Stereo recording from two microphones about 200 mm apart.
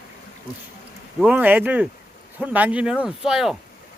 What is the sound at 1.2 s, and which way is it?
Speech, 5° right (ahead or behind).